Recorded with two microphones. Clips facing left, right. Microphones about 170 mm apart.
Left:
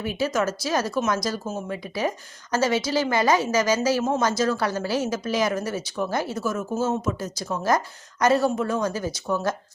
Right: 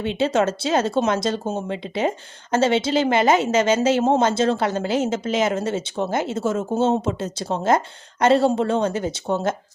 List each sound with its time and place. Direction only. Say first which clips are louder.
0.0 s speech: right 4 dB; 25° right (ahead or behind)